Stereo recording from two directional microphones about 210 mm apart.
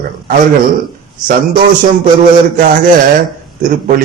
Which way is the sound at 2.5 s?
40° right (ahead or behind).